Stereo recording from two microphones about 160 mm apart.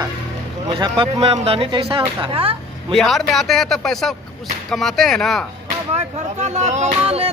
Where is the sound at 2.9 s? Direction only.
Centre (ahead or behind).